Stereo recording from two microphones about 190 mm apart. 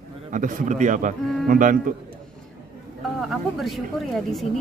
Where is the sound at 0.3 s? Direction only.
40° right (ahead or behind).